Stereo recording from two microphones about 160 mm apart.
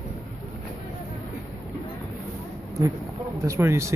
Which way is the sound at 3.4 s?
20° right (ahead or behind).